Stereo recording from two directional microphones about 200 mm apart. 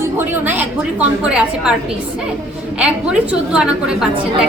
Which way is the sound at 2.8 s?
5° right (ahead or behind).